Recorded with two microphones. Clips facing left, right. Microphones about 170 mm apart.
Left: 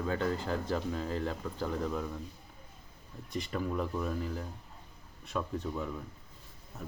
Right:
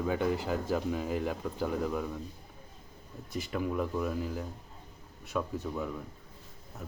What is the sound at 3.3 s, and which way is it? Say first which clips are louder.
Speech: right 1 dB; 5° right (ahead or behind).